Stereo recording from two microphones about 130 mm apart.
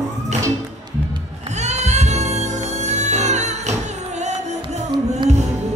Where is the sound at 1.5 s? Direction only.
60° right (ahead or behind).